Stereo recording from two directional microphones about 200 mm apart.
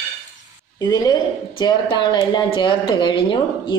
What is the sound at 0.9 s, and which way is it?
A woman's voice, 20° left (ahead or behind).